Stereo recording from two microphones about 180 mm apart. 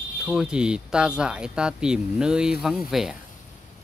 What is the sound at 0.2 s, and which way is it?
Speech, centre (ahead or behind).